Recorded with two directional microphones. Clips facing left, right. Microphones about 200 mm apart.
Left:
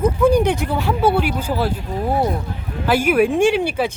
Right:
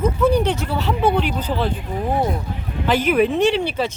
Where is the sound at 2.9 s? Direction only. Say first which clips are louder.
Left 1 dB; 10° left (ahead or behind).